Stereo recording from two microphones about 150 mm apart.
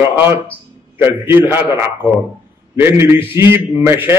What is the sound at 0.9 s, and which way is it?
A man's voice, 15° right (ahead or behind).